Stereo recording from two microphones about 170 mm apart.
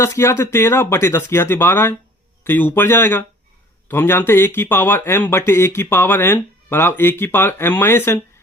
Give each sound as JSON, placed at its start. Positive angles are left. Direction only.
{"t": 0.0, "sound": "a man's voice", "side_deg": 15}